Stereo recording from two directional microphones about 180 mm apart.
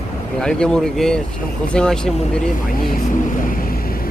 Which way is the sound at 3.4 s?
50° left (ahead or behind).